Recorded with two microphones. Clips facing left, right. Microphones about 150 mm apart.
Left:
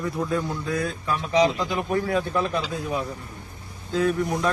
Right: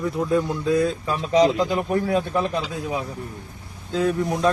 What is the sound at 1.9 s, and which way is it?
Speech, 30° right (ahead or behind).